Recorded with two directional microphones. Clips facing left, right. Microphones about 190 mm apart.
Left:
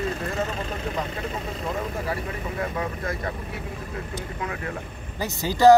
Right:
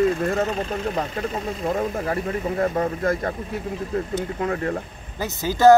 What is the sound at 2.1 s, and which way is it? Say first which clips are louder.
Speech: right 6 dB; 45° right (ahead or behind).